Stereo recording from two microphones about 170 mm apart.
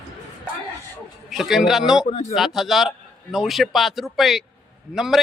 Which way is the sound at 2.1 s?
40° left (ahead or behind).